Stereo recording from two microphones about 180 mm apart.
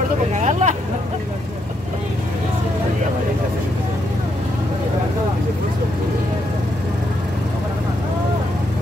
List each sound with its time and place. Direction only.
0.3 s vehicle: 40° right (ahead or behind)